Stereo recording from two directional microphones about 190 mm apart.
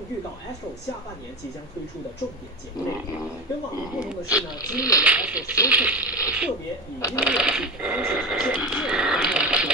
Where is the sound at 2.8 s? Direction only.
20° left (ahead or behind).